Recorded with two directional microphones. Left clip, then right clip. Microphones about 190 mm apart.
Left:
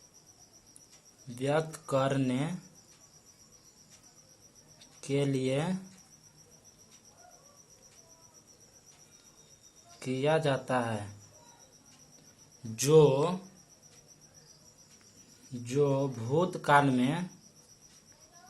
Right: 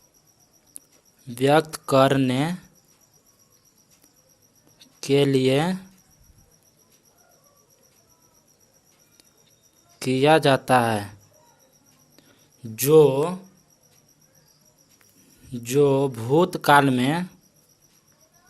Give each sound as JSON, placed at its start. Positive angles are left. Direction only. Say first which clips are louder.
{"t": 1.3, "sound": "speech", "louder": "right 12 dB", "side_deg": -50}
{"t": 4.8, "sound": "speech", "louder": "right 12 dB", "side_deg": -45}
{"t": 10.0, "sound": "speech", "louder": "right 11 dB", "side_deg": -50}
{"t": 12.6, "sound": "speech", "louder": "right 7 dB", "side_deg": -40}
{"t": 15.5, "sound": "speech", "louder": "right 10 dB", "side_deg": -55}